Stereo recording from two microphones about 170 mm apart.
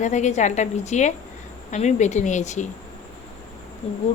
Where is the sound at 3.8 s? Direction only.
35° left (ahead or behind).